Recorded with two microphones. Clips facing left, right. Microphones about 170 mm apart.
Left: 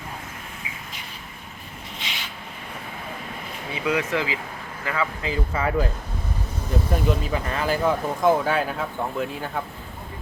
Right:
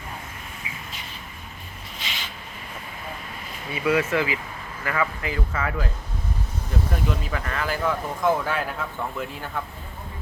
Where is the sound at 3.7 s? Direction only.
15° left (ahead or behind); by 5.8 s 30° left (ahead or behind).